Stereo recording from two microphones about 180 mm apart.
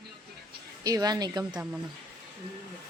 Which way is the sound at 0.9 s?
20° right (ahead or behind).